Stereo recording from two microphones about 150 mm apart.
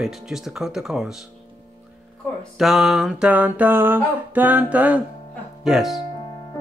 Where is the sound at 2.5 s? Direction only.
Centre (ahead or behind).